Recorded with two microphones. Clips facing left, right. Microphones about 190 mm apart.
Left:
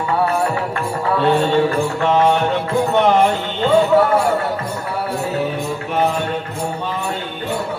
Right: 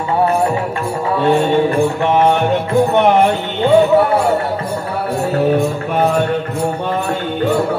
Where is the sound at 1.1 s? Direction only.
15° right (ahead or behind).